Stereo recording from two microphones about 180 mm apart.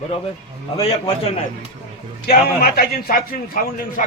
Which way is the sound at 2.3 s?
55° left (ahead or behind).